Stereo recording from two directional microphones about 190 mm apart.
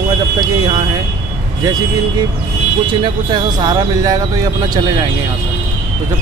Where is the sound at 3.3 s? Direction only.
20° right (ahead or behind).